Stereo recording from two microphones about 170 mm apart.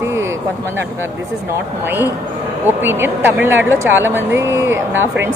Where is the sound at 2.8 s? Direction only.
10° right (ahead or behind).